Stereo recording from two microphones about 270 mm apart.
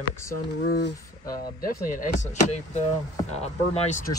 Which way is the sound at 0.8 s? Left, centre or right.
Left.